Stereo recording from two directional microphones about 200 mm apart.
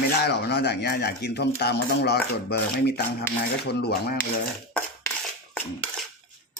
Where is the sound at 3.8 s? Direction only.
50° left (ahead or behind).